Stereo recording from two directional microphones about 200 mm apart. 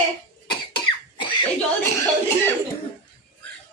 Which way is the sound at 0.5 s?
25° left (ahead or behind).